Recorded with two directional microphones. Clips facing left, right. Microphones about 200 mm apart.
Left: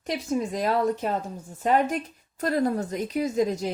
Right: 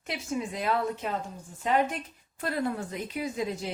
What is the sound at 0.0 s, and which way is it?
A woman's voice, 40° left (ahead or behind).